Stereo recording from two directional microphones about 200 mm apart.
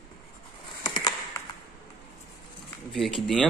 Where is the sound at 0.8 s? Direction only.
20° left (ahead or behind).